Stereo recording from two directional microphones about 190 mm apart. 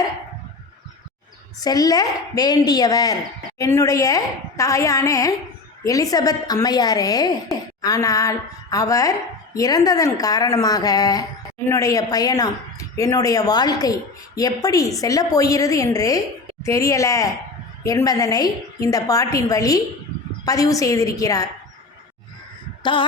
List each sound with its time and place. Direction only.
1.6 s a woman's voice: 20° left (ahead or behind)
22.8 s speech: 25° left (ahead or behind)